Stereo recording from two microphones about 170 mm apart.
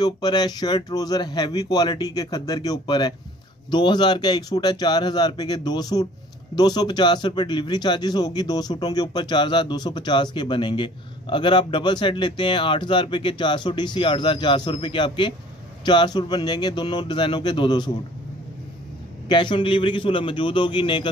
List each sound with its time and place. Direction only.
0.0 s speech: 25° left (ahead or behind)
19.2 s speech: 25° left (ahead or behind)